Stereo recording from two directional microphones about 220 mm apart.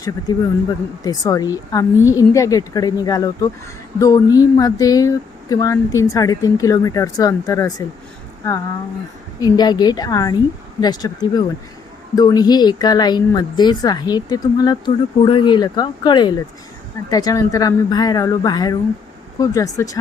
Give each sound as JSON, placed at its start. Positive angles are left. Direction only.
{"t": 0.0, "sound": "speech", "side_deg": 15}
{"t": 9.4, "sound": "speech", "side_deg": 20}